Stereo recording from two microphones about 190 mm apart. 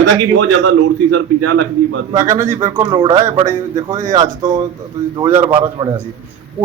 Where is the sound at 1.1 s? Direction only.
90° right.